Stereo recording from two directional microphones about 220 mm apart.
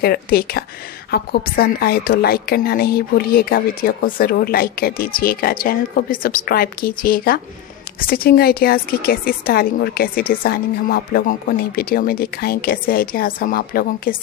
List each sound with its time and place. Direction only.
0.0 s a woman's voice: 45° left (ahead or behind)